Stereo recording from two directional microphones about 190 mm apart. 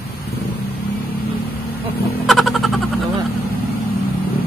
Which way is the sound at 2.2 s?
Centre (ahead or behind).